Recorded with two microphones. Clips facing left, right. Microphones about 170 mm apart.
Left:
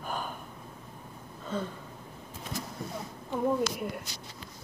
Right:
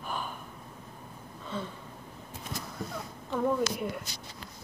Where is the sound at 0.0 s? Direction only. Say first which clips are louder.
Left 1 dB; 45° left (ahead or behind).